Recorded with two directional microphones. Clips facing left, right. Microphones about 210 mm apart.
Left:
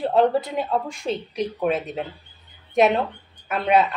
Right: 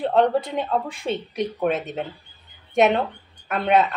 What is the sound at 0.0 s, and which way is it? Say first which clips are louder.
A woman's voice: even; 5° left (ahead or behind).